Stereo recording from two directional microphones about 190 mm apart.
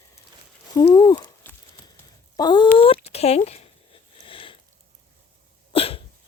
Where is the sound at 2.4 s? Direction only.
25° left (ahead or behind).